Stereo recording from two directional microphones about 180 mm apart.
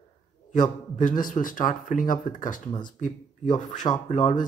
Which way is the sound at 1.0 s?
50° left (ahead or behind).